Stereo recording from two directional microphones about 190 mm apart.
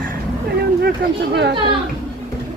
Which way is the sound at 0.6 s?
55° right (ahead or behind).